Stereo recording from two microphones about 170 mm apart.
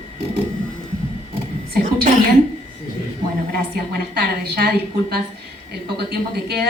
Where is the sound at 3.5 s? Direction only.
65° right (ahead or behind).